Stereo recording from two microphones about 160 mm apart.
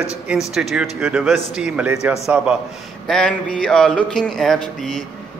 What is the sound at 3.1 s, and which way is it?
Speech, 5° left (ahead or behind).